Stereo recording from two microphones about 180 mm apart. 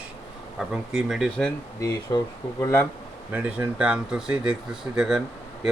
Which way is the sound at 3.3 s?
10° right (ahead or behind).